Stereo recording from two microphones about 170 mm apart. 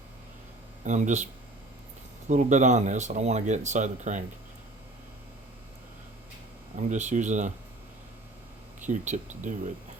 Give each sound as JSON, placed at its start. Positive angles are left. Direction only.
{"t": 0.9, "sound": "speech", "side_deg": -45}
{"t": 2.3, "sound": "speech", "side_deg": -45}
{"t": 6.8, "sound": "speech", "side_deg": -45}
{"t": 8.9, "sound": "speech", "side_deg": -45}